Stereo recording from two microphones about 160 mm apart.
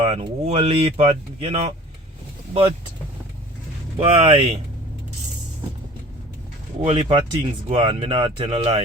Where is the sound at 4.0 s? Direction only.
35° right (ahead or behind).